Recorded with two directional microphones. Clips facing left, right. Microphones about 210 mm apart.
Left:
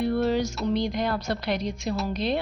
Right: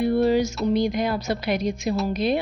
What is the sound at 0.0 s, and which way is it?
Music, 10° right (ahead or behind).